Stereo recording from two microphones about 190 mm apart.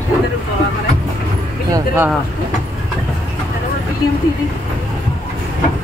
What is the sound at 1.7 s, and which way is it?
Speech, 15° right (ahead or behind).